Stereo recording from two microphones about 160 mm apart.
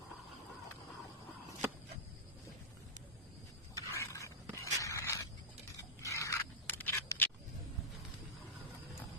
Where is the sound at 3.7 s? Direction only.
20° left (ahead or behind).